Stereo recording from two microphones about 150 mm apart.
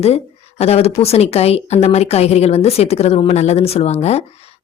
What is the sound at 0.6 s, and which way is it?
A woman's voice, 45° left (ahead or behind).